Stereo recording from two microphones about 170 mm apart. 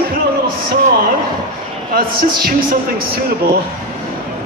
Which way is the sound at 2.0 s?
60° right (ahead or behind).